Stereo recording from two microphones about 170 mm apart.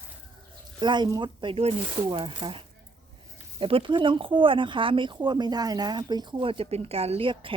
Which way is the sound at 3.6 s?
30° right (ahead or behind).